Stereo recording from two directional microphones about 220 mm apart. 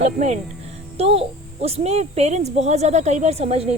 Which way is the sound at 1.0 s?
25° right (ahead or behind).